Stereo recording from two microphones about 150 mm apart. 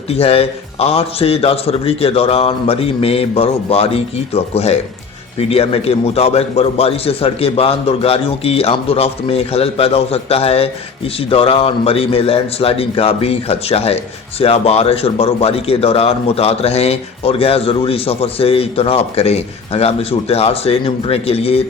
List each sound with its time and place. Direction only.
0.1 s a man's voice: 40° left (ahead or behind)